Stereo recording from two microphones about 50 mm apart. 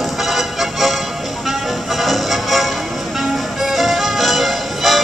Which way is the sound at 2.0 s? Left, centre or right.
Centre.